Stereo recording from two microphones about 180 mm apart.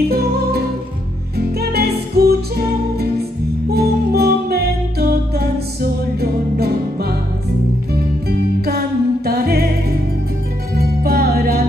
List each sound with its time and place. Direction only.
0.1 s music: 60° right (ahead or behind)